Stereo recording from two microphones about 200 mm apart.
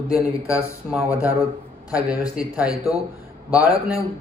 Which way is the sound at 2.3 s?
5° right (ahead or behind).